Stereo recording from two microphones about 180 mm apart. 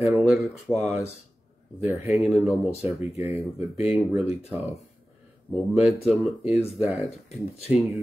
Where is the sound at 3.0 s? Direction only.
15° right (ahead or behind).